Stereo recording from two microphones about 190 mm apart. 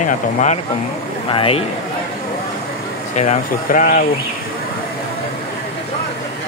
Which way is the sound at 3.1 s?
40° left (ahead or behind).